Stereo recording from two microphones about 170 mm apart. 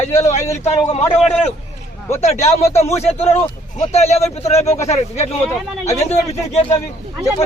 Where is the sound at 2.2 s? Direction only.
40° left (ahead or behind).